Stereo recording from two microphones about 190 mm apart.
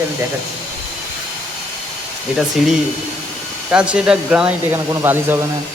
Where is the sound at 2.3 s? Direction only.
Centre (ahead or behind).